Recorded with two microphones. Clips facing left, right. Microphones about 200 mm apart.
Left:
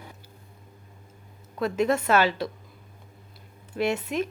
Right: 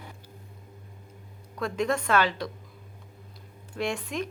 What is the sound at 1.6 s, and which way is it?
Speech, 5° left (ahead or behind).